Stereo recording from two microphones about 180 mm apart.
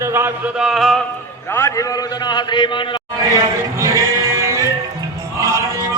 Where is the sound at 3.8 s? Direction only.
20° right (ahead or behind).